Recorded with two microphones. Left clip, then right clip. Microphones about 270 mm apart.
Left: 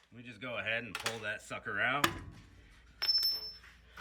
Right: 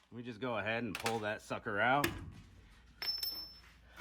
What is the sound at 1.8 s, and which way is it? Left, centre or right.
Speech, right.